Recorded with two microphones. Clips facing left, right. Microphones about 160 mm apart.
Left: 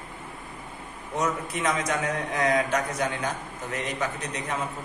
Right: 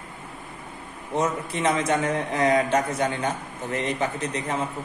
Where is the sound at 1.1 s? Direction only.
30° right (ahead or behind).